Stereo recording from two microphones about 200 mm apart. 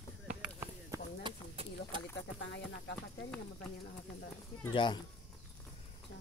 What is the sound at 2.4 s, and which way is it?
Speech, 60° left (ahead or behind).